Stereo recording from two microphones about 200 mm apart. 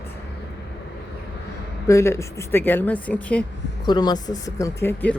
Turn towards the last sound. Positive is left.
turn(degrees=10)  # may be behind; listen again after turning